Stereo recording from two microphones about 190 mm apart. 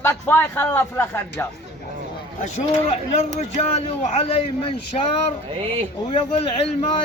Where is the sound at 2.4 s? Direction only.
35° left (ahead or behind).